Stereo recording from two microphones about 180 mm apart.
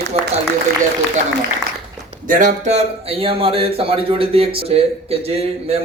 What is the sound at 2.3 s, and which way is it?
A man's voice, 45° right (ahead or behind).